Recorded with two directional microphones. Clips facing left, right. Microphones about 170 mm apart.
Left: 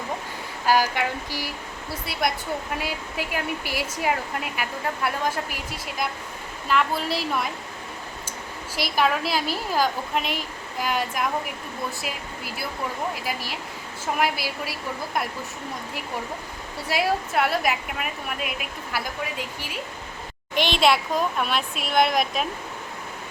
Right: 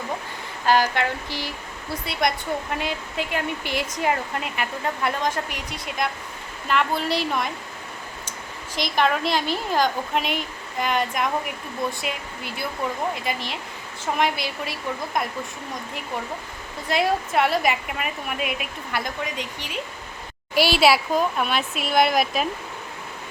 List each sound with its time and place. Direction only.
0.6 s a sound: 10° left (ahead or behind)
2.7 s a woman's voice: 5° left (ahead or behind)
8.7 s a woman's voice: 5° left (ahead or behind)
13.2 s a woman's voice: 5° left (ahead or behind)
16.9 s a woman's voice: centre (ahead or behind)
20.6 s a woman's voice: 5° right (ahead or behind)